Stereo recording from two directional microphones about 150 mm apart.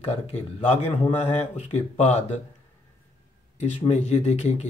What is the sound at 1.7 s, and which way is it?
Speech, 50° left (ahead or behind).